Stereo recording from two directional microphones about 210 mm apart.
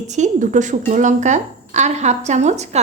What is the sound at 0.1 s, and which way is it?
Speech, 35° right (ahead or behind).